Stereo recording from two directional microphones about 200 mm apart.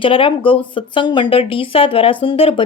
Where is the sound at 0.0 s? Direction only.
25° left (ahead or behind).